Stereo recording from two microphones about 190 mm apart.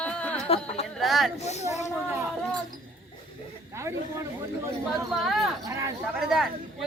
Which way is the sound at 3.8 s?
15° right (ahead or behind).